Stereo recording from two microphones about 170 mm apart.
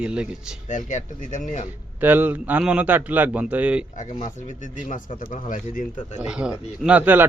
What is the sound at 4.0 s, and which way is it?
Speech, 45° left (ahead or behind).